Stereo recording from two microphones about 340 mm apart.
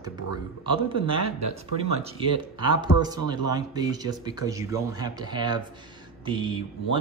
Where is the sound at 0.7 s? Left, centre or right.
Centre.